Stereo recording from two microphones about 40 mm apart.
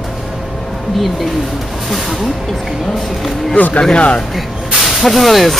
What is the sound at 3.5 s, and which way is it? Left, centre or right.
Speech, left.